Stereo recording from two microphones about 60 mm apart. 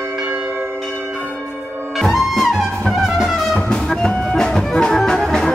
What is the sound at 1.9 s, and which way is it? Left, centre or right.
Music, centre.